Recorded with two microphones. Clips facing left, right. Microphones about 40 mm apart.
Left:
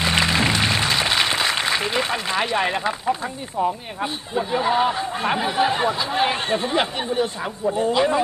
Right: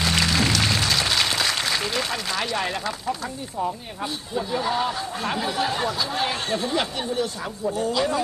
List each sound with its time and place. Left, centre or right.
0.0 s music: left
3.6 s speech: left